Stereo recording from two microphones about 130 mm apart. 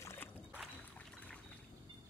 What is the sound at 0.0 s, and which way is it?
Boat, 20° left (ahead or behind).